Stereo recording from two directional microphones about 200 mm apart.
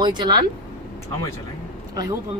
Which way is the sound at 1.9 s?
20° right (ahead or behind).